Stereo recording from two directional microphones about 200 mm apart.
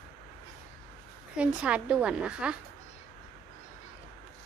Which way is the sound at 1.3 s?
5° right (ahead or behind).